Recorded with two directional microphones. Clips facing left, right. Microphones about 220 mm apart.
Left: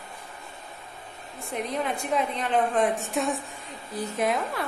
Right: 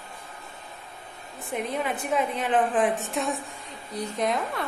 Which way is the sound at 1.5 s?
Centre (ahead or behind).